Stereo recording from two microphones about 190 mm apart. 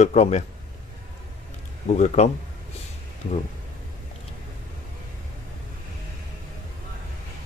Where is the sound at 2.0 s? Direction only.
35° left (ahead or behind).